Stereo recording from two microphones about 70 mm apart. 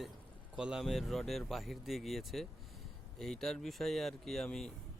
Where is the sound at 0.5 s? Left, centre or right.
Centre.